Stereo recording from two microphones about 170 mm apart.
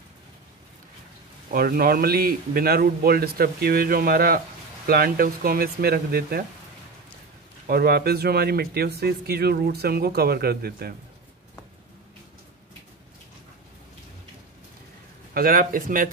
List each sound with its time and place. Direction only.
1.5 s speech: 60° right (ahead or behind)
7.6 s speech: 65° right (ahead or behind)
15.3 s speech: 55° right (ahead or behind)